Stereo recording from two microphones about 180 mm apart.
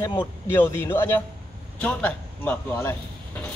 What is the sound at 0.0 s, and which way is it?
Speech, 25° left (ahead or behind).